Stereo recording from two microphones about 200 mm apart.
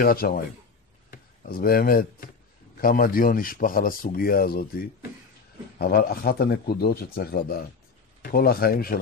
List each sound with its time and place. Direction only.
0.0 s speech: 45° left (ahead or behind)
5.8 s speech: 50° left (ahead or behind)